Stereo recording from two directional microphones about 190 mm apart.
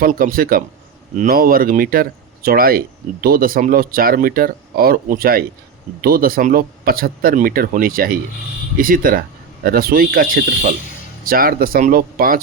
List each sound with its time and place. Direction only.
0.0 s speech: 50° right (ahead or behind)